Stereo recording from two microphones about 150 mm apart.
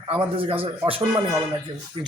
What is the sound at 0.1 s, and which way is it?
Speech, 35° right (ahead or behind).